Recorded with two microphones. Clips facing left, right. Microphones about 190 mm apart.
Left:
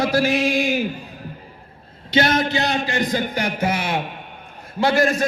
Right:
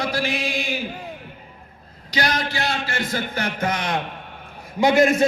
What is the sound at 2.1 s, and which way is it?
Speech, 25° left (ahead or behind).